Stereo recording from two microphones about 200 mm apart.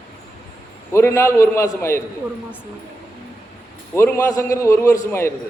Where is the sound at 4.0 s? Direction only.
15° left (ahead or behind).